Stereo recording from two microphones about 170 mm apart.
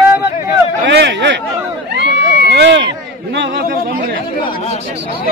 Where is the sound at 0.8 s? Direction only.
90° right.